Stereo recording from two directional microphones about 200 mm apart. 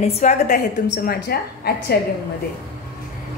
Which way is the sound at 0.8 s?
50° left (ahead or behind).